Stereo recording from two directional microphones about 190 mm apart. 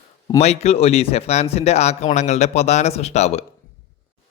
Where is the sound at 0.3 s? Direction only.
35° left (ahead or behind).